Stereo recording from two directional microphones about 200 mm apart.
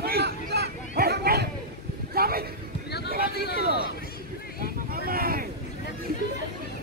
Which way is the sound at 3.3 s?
55° left (ahead or behind).